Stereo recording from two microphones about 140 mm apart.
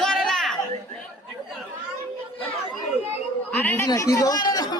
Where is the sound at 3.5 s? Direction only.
10° left (ahead or behind).